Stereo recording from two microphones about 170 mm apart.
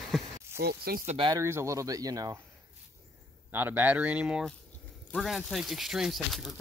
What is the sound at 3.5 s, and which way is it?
Speech, 10° right (ahead or behind).